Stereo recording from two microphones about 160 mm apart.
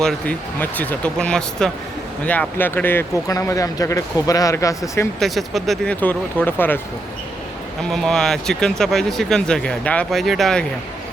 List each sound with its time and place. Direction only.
0.0 s speech: 5° left (ahead or behind)
5.2 s speech: centre (ahead or behind)
7.8 s speech: 5° left (ahead or behind)